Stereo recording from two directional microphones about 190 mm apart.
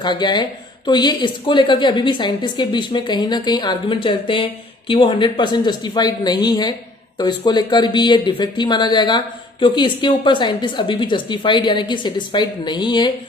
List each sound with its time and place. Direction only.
0.0 s speech: 20° left (ahead or behind)